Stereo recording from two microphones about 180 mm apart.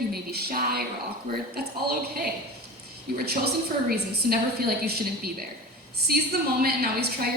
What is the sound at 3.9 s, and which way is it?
A woman's voice, 60° right (ahead or behind).